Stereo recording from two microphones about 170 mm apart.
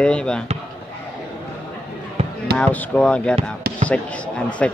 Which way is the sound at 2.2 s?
35° right (ahead or behind).